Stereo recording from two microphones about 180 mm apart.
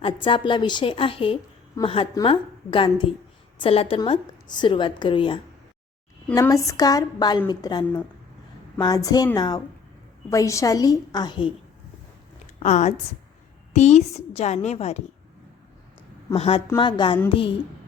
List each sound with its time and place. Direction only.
0.0 s a woman's voice: 30° left (ahead or behind)
12.5 s a woman's voice: 40° left (ahead or behind)
16.3 s a woman's voice: 30° left (ahead or behind)